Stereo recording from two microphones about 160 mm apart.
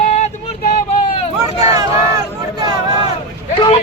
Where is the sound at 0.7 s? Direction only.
40° left (ahead or behind).